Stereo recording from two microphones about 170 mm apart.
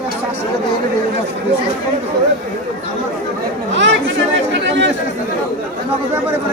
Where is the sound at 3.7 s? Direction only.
90° right.